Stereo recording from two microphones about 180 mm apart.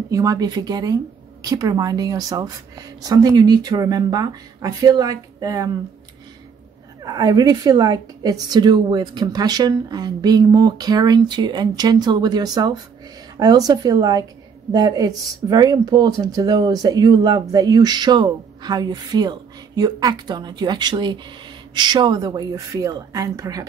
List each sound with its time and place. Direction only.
0.1 s speech: 20° right (ahead or behind)
7.0 s speech: 20° right (ahead or behind)